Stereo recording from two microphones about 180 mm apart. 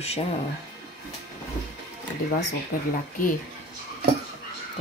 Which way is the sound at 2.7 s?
55° left (ahead or behind).